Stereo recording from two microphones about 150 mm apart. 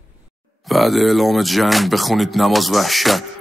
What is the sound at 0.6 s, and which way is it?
Speech, centre (ahead or behind).